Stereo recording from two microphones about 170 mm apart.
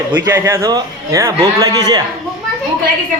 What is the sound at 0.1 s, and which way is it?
A man's voice, 15° right (ahead or behind).